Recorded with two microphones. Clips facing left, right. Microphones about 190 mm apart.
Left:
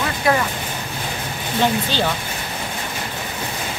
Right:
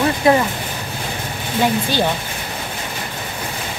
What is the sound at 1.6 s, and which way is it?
Speech, 10° right (ahead or behind).